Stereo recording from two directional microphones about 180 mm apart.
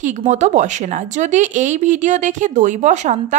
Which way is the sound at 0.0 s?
40° right (ahead or behind).